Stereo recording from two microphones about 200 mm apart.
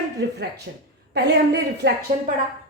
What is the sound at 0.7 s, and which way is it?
A woman's voice, 60° right (ahead or behind).